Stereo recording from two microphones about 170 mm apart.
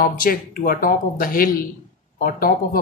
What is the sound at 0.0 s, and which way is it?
Speech, 60° left (ahead or behind).